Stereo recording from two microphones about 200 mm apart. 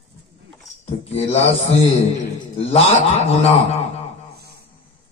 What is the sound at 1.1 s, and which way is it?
Speech, 35° left (ahead or behind).